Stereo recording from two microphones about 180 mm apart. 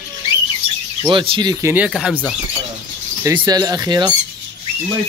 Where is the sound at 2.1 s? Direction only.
10° left (ahead or behind).